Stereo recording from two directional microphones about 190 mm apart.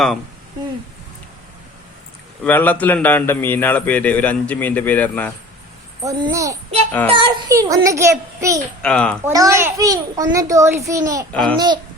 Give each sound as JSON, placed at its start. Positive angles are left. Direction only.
{"t": 2.4, "sound": "a man's voice", "side_deg": 10}
{"t": 6.0, "sound": "a child's voice", "side_deg": -20}
{"t": 8.8, "sound": "a child's voice", "side_deg": 5}
{"t": 9.2, "sound": "a child's voice", "side_deg": -15}
{"t": 11.3, "sound": "a child's voice", "side_deg": 5}
{"t": 11.5, "sound": "speech", "side_deg": -25}